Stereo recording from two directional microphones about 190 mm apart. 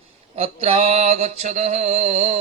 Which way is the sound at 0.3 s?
30° right (ahead or behind).